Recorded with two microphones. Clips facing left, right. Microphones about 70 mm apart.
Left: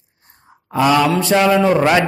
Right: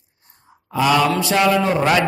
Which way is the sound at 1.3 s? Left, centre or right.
Left.